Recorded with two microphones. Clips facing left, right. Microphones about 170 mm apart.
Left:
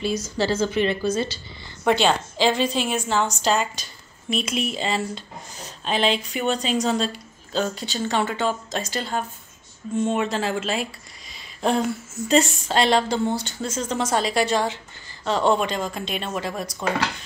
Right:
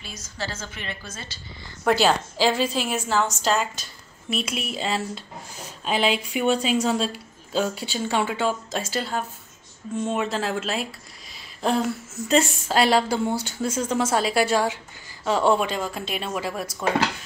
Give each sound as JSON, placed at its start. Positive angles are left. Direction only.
{"t": 0.4, "sound": "a woman's voice", "side_deg": 30}
{"t": 1.9, "sound": "a woman's voice", "side_deg": -5}